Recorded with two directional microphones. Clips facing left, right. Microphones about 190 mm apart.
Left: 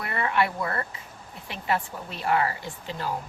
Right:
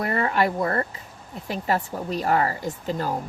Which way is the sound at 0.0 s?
40° right (ahead or behind).